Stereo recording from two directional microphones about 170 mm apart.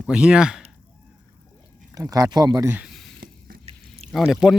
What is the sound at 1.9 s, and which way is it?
Speech, 20° right (ahead or behind).